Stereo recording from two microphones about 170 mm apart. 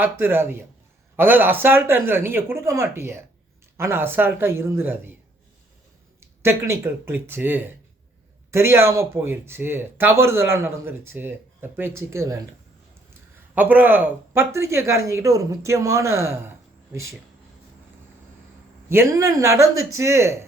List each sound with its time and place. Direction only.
0.0 s speech: 15° right (ahead or behind)
6.1 s speech: 15° right (ahead or behind)
13.6 s speech: 10° right (ahead or behind)
18.9 s speech: 15° right (ahead or behind)